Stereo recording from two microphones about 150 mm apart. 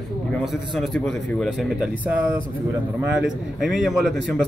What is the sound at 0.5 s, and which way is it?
A man's voice, centre (ahead or behind).